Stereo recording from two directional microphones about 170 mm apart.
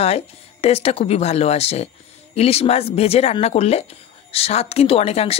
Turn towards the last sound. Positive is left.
turn(degrees=35)  # may be behind; listen again after turning